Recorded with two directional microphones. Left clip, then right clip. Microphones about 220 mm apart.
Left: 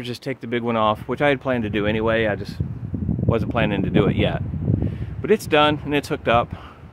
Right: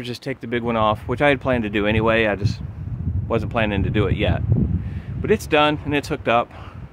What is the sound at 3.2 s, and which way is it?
Speech, 5° right (ahead or behind).